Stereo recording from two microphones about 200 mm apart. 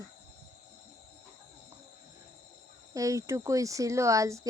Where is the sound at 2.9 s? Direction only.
15° right (ahead or behind).